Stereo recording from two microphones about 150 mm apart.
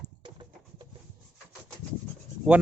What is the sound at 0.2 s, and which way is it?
Music, 30° right (ahead or behind).